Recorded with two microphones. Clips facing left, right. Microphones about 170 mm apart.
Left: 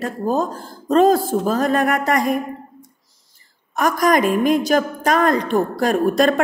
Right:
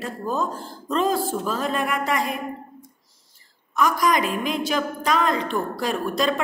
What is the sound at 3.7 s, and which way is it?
Speech, 50° left (ahead or behind).